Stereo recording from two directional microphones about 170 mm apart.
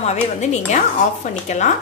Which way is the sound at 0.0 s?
40° left (ahead or behind).